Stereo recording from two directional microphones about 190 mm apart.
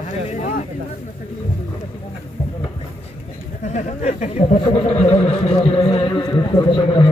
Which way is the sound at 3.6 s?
40° left (ahead or behind).